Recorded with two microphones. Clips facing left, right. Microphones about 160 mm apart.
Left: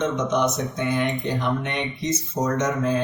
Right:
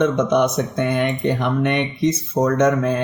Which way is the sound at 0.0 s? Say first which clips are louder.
Right 5 dB; 60° right (ahead or behind).